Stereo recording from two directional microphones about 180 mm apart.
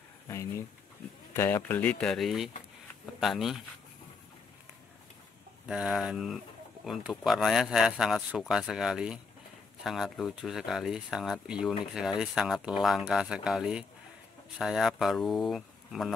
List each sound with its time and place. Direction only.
0.3 s speech: 15° left (ahead or behind); by 3.6 s centre (ahead or behind)
5.7 s speech: centre (ahead or behind)